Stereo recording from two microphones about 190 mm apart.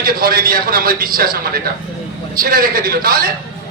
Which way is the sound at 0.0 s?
50° right (ahead or behind).